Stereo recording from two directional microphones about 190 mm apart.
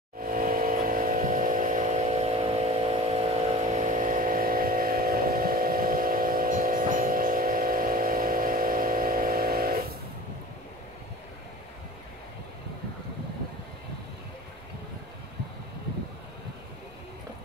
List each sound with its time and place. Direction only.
0.2 s vehicle: 45° right (ahead or behind)